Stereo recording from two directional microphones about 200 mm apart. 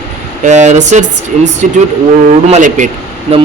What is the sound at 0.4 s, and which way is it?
Speech, 35° right (ahead or behind).